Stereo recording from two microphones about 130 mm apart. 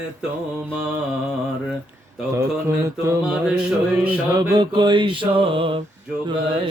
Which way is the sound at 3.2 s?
5° right (ahead or behind).